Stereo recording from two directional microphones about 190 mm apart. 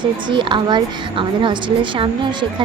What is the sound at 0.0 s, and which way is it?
A woman's voice, 25° right (ahead or behind).